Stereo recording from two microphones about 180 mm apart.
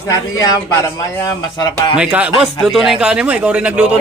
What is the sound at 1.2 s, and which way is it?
Speech, 25° left (ahead or behind).